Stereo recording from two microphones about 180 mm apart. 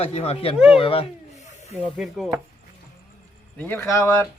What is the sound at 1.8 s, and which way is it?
Speech, centre (ahead or behind).